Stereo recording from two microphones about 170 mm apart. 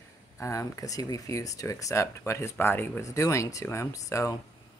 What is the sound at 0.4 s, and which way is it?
Speech, 20° left (ahead or behind).